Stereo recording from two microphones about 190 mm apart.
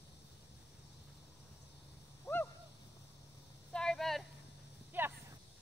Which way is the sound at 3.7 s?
5° left (ahead or behind).